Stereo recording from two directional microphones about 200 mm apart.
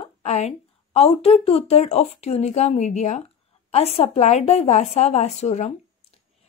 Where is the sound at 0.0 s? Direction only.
35° left (ahead or behind).